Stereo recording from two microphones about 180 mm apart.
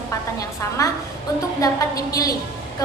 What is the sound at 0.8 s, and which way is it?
A woman's voice, 20° left (ahead or behind).